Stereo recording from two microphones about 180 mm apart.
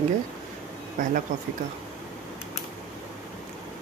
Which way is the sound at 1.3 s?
45° right (ahead or behind).